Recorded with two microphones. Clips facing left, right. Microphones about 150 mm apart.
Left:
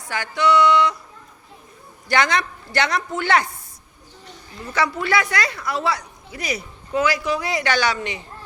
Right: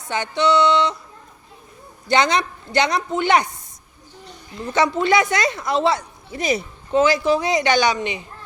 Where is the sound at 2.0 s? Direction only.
20° right (ahead or behind).